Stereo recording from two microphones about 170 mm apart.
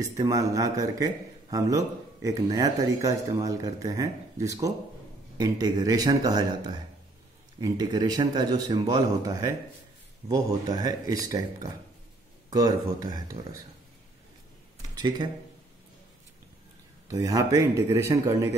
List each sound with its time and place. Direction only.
0.0 s speech: 20° right (ahead or behind)
15.0 s speech: 25° right (ahead or behind)
17.1 s speech: 20° right (ahead or behind)